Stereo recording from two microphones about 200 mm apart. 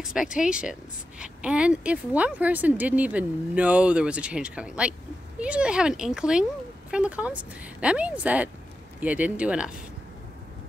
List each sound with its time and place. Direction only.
0.0 s speech: 5° right (ahead or behind)